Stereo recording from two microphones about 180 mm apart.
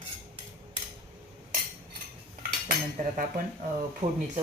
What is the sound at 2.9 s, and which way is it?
Speech, 45° right (ahead or behind).